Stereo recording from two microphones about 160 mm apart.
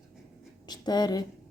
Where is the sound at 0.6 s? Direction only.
25° left (ahead or behind).